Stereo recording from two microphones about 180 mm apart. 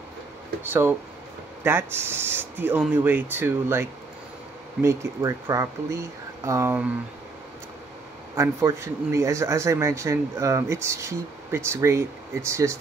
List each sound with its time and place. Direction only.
0.7 s a man's voice: 10° right (ahead or behind)
4.8 s a man's voice: 15° right (ahead or behind)
8.4 s a man's voice: 15° right (ahead or behind)